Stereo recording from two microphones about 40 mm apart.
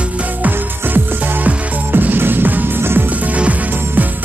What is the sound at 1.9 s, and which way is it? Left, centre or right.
Music, right.